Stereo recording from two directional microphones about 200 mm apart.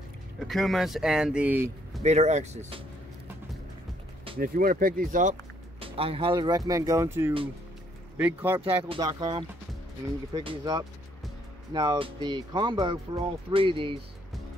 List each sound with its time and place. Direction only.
0.5 s speech: centre (ahead or behind)
2.0 s speech: 35° right (ahead or behind)
4.4 s speech: 45° right (ahead or behind)
5.8 s speech: 25° right (ahead or behind); by 8.7 s 10° right (ahead or behind)
8.8 s speech: 25° right (ahead or behind)